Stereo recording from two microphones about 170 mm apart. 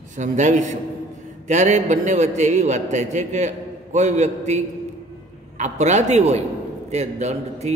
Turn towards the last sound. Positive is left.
turn(degrees=-40)  # may be behind; listen again after turning